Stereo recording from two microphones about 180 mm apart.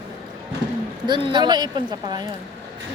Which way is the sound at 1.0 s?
25° right (ahead or behind).